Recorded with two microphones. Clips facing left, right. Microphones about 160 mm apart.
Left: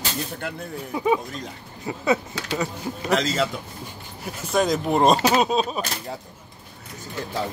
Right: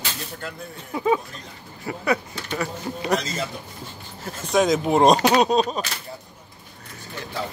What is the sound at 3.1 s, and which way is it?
Speech, 90° left.